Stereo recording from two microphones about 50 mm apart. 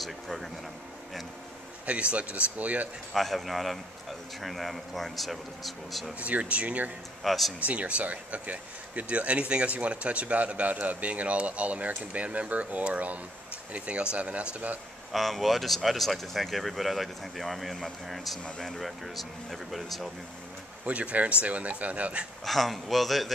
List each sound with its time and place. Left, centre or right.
0.0 s speech: centre
1.9 s speech: right
3.1 s speech: centre
6.1 s speech: right
7.2 s speech: centre
7.6 s speech: right
15.1 s speech: centre
20.8 s speech: right
22.4 s speech: centre